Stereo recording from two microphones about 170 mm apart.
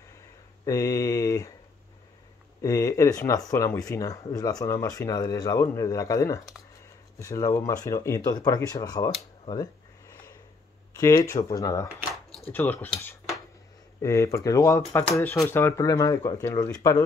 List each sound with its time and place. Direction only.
0.7 s speech: 20° left (ahead or behind)
2.6 s speech: 20° left (ahead or behind)
11.0 s speech: 20° left (ahead or behind)
11.9 s a sound: centre (ahead or behind)
12.5 s speech: 10° left (ahead or behind)